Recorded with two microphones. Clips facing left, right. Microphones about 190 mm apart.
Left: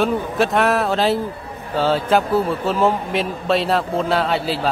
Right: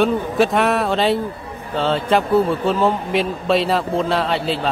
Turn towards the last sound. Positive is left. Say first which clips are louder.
# even
turn(degrees=0)  # may be behind; listen again after turning